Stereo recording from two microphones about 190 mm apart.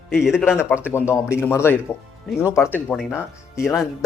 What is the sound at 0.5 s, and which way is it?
Speech, 15° left (ahead or behind).